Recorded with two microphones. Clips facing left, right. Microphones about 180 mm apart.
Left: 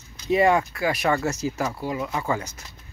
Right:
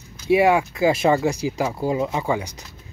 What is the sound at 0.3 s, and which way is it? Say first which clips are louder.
Speech: right 3 dB; 10° right (ahead or behind).